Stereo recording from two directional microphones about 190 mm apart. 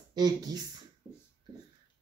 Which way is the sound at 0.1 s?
20° right (ahead or behind).